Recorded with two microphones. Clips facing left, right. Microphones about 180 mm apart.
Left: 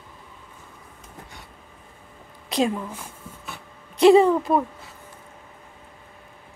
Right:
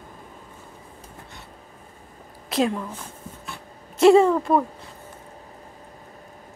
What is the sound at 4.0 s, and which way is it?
Speech, centre (ahead or behind).